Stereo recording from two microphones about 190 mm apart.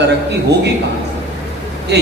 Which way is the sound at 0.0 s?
65° right (ahead or behind).